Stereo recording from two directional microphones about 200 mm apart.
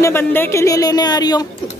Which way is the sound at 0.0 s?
10° left (ahead or behind).